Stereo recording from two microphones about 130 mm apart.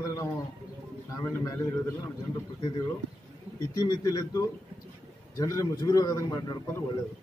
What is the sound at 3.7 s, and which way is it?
A man's voice, 30° left (ahead or behind).